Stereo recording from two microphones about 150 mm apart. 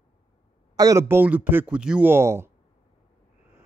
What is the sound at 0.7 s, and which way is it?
Speech, 20° right (ahead or behind).